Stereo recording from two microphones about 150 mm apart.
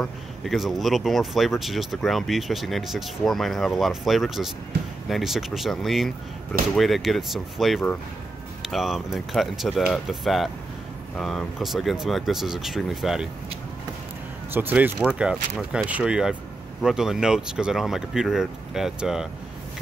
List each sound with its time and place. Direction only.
0.0 s speech: centre (ahead or behind)
14.5 s speech: 10° right (ahead or behind)